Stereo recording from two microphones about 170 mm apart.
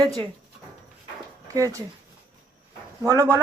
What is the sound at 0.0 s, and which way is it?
Speech, 20° right (ahead or behind).